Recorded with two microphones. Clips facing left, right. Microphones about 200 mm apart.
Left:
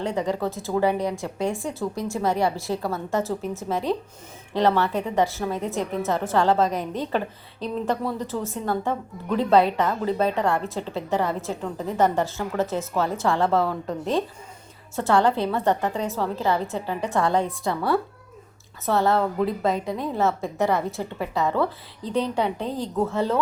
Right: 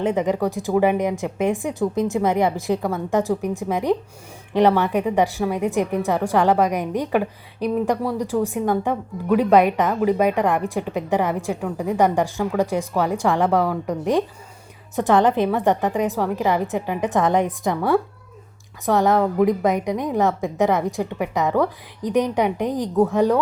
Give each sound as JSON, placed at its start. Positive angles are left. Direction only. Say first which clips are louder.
{"t": 0.0, "sound": "a woman's voice", "louder": "right 5 dB", "side_deg": -20}